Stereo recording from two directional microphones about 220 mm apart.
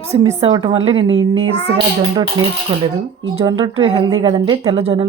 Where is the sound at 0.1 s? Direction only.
30° right (ahead or behind).